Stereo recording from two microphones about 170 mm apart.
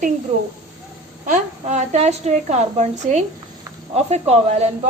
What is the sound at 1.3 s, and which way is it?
A woman's voice, 45° right (ahead or behind).